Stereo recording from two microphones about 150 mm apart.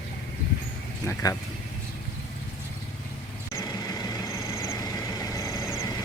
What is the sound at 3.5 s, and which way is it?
Vehicle, 25° left (ahead or behind).